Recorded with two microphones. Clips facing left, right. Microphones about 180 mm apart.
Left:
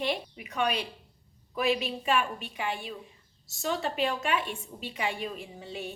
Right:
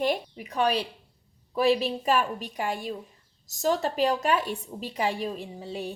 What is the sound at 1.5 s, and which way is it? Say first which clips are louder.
A woman's voice: right 5 dB; 35° right (ahead or behind).